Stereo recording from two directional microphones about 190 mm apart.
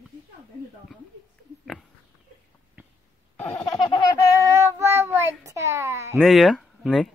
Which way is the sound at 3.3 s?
Centre (ahead or behind).